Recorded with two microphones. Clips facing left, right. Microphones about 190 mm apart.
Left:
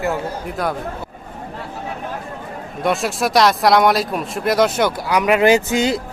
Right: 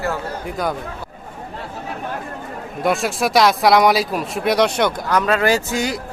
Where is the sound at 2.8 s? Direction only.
Centre (ahead or behind); by 6.0 s 20° left (ahead or behind).